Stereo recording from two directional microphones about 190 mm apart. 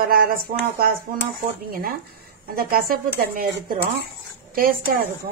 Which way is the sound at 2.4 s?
50° right (ahead or behind).